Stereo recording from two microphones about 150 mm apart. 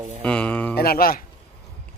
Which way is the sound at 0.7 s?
90° left.